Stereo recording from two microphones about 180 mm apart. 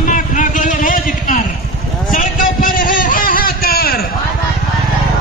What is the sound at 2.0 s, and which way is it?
Vehicle, 50° left (ahead or behind).